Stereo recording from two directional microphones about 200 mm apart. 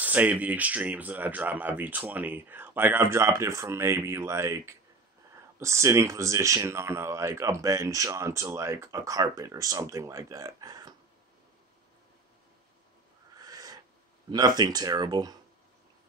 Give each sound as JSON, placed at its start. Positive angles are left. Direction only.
{"t": 0.0, "sound": "speech", "side_deg": -10}
{"t": 13.4, "sound": "owl", "side_deg": -20}
{"t": 14.3, "sound": "speech", "side_deg": -20}